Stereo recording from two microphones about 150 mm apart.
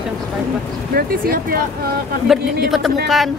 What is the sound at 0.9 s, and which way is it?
Speech, 80° right.